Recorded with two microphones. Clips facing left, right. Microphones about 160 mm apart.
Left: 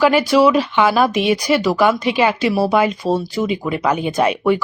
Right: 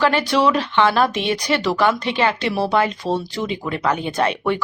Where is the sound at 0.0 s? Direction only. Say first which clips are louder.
Left 5 dB; 10° left (ahead or behind).